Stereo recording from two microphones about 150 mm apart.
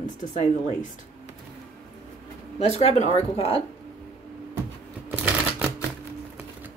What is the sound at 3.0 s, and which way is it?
Speech, 45° left (ahead or behind).